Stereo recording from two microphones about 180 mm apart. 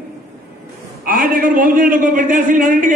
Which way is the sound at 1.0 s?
50° right (ahead or behind).